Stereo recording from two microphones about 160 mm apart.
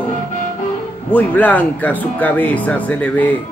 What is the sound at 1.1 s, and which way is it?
Speech, 10° left (ahead or behind).